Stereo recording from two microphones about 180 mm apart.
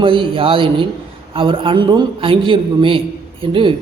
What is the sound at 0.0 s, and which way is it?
A man's voice, 30° right (ahead or behind).